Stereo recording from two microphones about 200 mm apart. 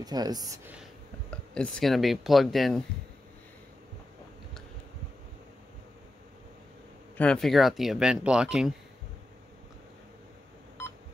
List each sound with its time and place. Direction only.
0.0 s speech: 20° right (ahead or behind)
1.3 s speech: 5° left (ahead or behind)
7.2 s speech: 5° left (ahead or behind)